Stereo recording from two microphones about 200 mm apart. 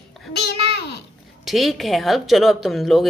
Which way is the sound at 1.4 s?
Centre (ahead or behind).